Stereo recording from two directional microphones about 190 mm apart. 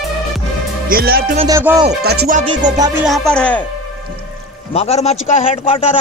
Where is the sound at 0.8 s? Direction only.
50° right (ahead or behind).